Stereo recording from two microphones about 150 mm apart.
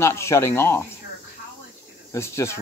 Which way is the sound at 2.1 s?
20° left (ahead or behind).